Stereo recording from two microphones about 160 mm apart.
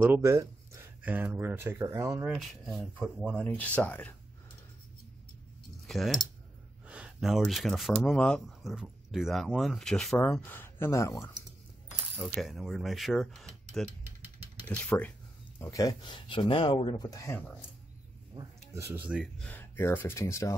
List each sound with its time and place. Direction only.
0.0 s speech: 15° right (ahead or behind)
2.2 s speech: centre (ahead or behind)
5.9 s speech: centre (ahead or behind); by 11.3 s 20° left (ahead or behind)
12.2 s speech: centre (ahead or behind)
14.2 s vehicle: 10° right (ahead or behind)
14.9 s speech: 10° left (ahead or behind)
18.8 s speech: 15° right (ahead or behind)
19.4 s speech: 10° left (ahead or behind)